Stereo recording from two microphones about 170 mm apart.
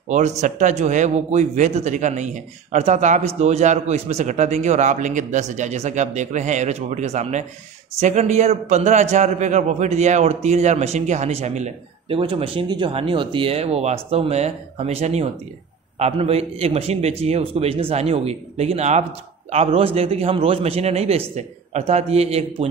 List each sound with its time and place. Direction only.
0.4 s a man's voice: 45° right (ahead or behind)